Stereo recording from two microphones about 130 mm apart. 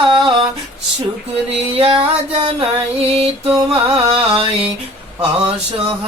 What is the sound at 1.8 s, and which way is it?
Mantra, 45° right (ahead or behind).